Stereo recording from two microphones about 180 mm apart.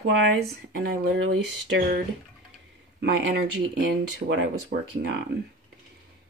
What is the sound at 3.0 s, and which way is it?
Speech, 65° right (ahead or behind).